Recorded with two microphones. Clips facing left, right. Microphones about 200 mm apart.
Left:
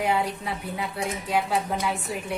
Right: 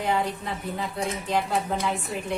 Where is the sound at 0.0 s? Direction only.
5° left (ahead or behind).